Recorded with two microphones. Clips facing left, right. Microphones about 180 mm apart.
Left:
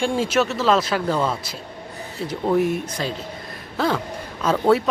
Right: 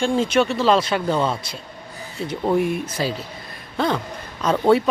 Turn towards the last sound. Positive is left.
turn(degrees=0)  # may be behind; listen again after turning